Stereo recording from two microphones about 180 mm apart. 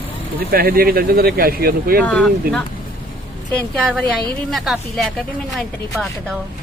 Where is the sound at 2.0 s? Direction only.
5° left (ahead or behind).